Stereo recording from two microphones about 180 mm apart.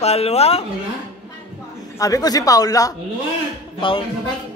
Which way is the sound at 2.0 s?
20° left (ahead or behind).